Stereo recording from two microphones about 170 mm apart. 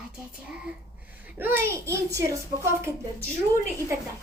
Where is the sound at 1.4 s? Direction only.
15° right (ahead or behind).